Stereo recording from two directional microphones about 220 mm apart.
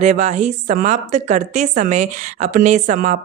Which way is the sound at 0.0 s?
30° right (ahead or behind).